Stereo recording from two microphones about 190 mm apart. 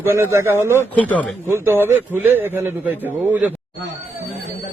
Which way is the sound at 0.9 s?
5° left (ahead or behind).